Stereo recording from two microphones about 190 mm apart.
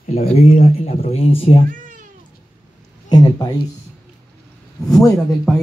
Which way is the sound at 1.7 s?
45° right (ahead or behind).